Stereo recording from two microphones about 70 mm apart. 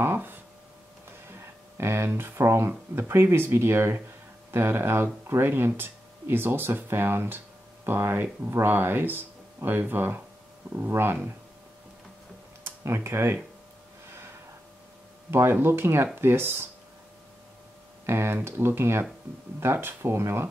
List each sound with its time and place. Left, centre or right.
0.0 s a sound: right
1.3 s speech: right
12.8 s speech: right
15.3 s speech: right
18.0 s speech: right